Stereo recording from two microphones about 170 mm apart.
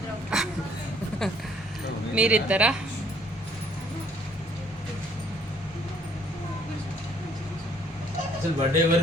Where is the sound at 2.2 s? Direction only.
10° right (ahead or behind).